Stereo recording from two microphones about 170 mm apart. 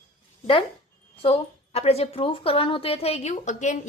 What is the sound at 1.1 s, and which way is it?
A woman's voice, 35° left (ahead or behind).